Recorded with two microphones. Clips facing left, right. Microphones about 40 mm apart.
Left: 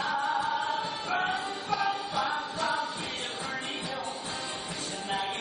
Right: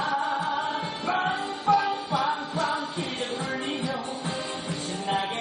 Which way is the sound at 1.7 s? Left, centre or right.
Right.